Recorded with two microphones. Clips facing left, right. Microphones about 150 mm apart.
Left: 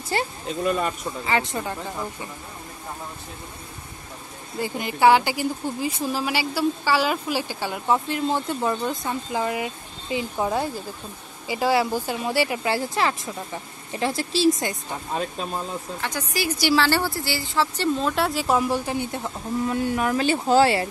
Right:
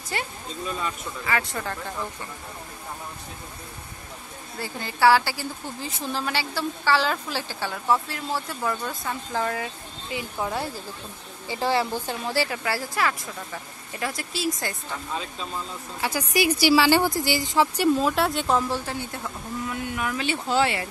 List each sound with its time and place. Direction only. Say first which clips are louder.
0.1 s speech: left 6 dB; 30° left (ahead or behind)
0.5 s speech: left 8 dB; 60° left (ahead or behind)
1.2 s speech: left 3 dB; 25° left (ahead or behind)
4.6 s a woman's voice: left 3 dB; 15° left (ahead or behind)
15.1 s speech: left 7 dB; 55° left (ahead or behind)
16.0 s speech: right 6 dB; 10° right (ahead or behind); by 19.3 s 15° left (ahead or behind)
19.6 s speech: left 6 dB; 35° left (ahead or behind)